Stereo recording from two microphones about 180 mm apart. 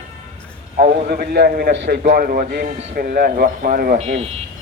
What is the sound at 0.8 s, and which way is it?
Speech, 40° right (ahead or behind).